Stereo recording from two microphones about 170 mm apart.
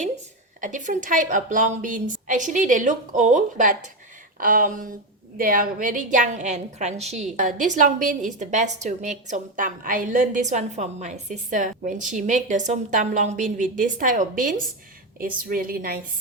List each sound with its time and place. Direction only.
0.6 s a woman's voice: 50° right (ahead or behind)